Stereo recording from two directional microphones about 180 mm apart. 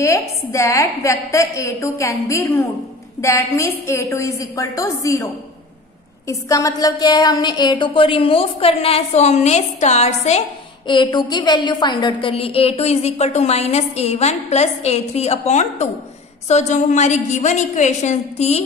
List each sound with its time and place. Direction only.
0.0 s a woman's voice: 15° left (ahead or behind); by 10.4 s 35° left (ahead or behind)
10.9 s a woman's voice: 25° left (ahead or behind)